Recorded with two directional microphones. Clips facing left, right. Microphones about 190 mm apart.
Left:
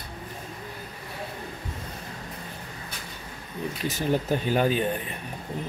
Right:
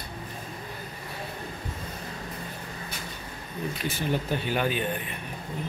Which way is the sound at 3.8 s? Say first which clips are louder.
Left 4 dB; 40° left (ahead or behind).